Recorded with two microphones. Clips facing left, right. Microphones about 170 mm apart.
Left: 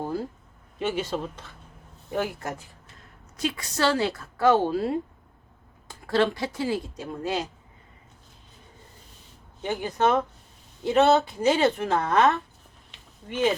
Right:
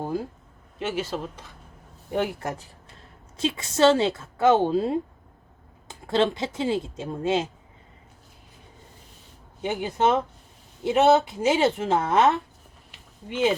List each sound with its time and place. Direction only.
0.0 s speech: 15° right (ahead or behind)
0.8 s speech: centre (ahead or behind)
2.1 s a woman's voice: 25° right (ahead or behind)
9.6 s speech: 15° right (ahead or behind)